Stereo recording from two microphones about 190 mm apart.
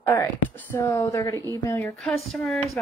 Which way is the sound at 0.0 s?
15° left (ahead or behind).